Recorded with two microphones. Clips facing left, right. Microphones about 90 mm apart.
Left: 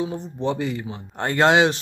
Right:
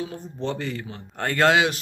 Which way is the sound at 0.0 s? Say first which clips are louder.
Left 5 dB; 20° left (ahead or behind).